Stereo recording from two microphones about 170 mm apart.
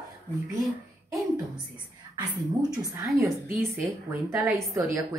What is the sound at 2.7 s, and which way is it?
A woman's voice, 20° right (ahead or behind).